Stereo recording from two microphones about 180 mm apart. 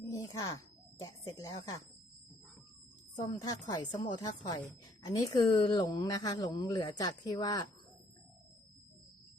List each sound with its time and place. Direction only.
0.1 s speech: 20° left (ahead or behind)
3.2 s a woman's voice: 20° left (ahead or behind)